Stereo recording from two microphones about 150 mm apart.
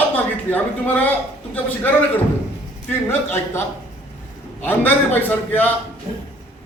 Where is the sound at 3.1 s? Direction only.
15° left (ahead or behind).